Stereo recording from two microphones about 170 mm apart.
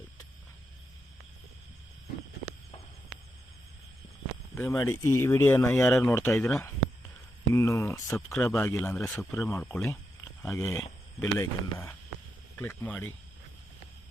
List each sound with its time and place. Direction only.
4.5 s speech: 15° left (ahead or behind)
6.3 s speech: centre (ahead or behind)
6.6 s a sound: 15° left (ahead or behind)
7.5 s speech: 15° left (ahead or behind)